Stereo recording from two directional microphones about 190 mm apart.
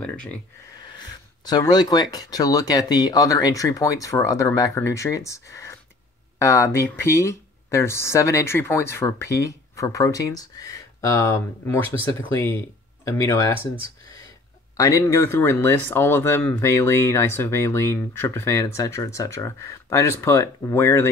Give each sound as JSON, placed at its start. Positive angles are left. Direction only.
{"t": 0.0, "sound": "speech", "side_deg": 5}
{"t": 0.8, "sound": "speech", "side_deg": 20}
{"t": 13.0, "sound": "speech", "side_deg": 15}
{"t": 14.8, "sound": "speech", "side_deg": 15}